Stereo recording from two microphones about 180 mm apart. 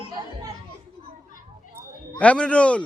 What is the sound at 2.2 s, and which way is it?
Speech, 5° left (ahead or behind).